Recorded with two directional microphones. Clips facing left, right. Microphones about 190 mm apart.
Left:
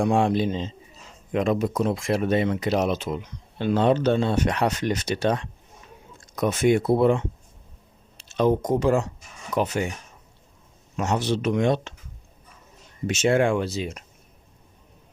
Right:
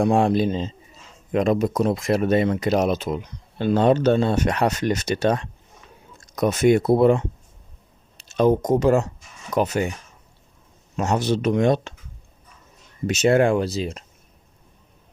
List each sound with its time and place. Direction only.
0.0 s speech: 40° right (ahead or behind)
8.3 s speech: 45° right (ahead or behind)
10.9 s speech: 40° right (ahead or behind)
13.1 s speech: 40° right (ahead or behind)